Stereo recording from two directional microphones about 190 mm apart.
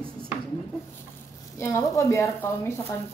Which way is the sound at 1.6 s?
15° left (ahead or behind).